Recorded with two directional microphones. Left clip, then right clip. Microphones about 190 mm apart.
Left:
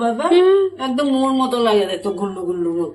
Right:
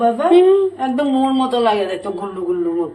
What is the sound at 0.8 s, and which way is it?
Speech, 25° left (ahead or behind).